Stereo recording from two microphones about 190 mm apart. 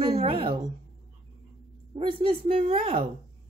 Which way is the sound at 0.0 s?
30° right (ahead or behind).